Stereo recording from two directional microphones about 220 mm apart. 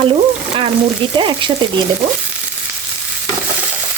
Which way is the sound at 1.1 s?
20° right (ahead or behind).